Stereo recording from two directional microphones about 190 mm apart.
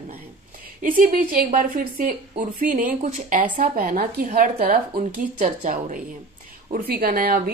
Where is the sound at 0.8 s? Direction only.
45° right (ahead or behind).